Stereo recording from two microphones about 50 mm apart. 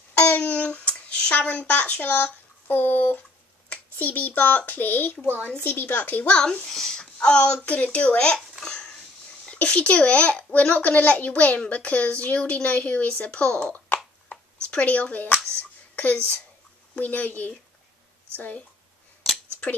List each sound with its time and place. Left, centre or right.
0.2 s a sound: left
1.7 s a woman's voice: left
6.2 s a woman's voice: centre
8.5 s babbling: centre
9.5 s a woman's voice: left
10.7 s a woman's voice: left
14.3 s a sound: left
16.0 s speech: left